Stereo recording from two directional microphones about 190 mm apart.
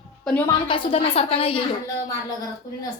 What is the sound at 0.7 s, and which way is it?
Speech, 30° left (ahead or behind).